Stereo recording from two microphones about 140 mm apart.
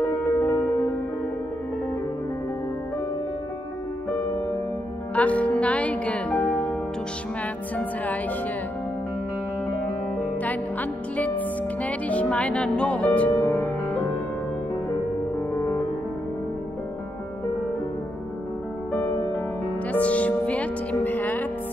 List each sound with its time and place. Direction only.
0.2 s music: 15° left (ahead or behind)
5.1 s music: 10° left (ahead or behind)
10.1 s music: 10° left (ahead or behind)
15.5 s music: 20° left (ahead or behind)
18.9 s music: 10° left (ahead or behind)